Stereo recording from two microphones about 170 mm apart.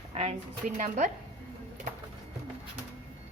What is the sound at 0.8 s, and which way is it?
Speech, 45° right (ahead or behind).